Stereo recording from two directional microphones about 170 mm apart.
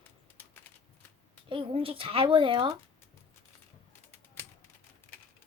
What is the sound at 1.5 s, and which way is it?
Speech, 30° right (ahead or behind).